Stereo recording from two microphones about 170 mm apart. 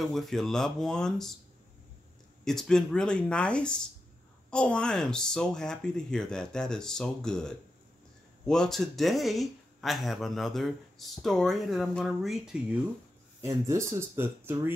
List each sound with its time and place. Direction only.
0.0 s speech: centre (ahead or behind)
2.4 s speech: 5° left (ahead or behind)
13.5 s speech: 15° right (ahead or behind)